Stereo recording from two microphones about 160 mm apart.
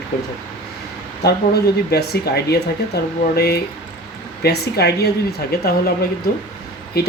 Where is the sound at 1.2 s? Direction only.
90° left.